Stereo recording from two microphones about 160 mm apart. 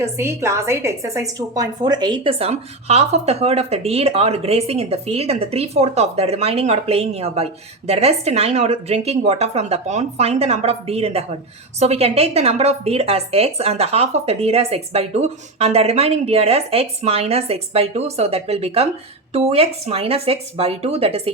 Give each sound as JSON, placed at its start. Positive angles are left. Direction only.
{"t": 0.0, "sound": "a woman's voice", "side_deg": -15}